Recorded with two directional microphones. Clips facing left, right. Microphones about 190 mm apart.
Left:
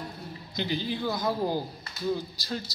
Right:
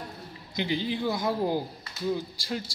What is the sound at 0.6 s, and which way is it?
A man's voice, 20° right (ahead or behind).